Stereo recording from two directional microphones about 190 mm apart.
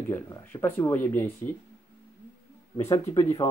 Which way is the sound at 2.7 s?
25° left (ahead or behind).